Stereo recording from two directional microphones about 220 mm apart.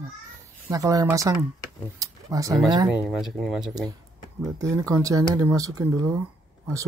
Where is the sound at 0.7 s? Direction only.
15° right (ahead or behind).